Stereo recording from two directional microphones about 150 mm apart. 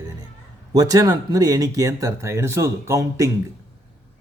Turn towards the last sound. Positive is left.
turn(degrees=-20)  # may be behind; listen again after turning